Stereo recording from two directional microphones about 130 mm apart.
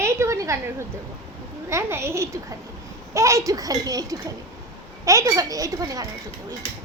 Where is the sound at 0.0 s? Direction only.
20° right (ahead or behind).